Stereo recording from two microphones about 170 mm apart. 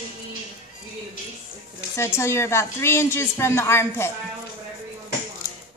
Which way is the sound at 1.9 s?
15° left (ahead or behind).